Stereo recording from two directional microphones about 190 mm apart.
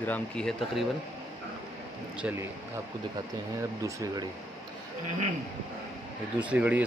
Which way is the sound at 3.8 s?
20° right (ahead or behind).